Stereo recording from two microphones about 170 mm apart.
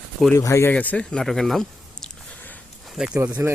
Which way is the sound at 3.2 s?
15° right (ahead or behind).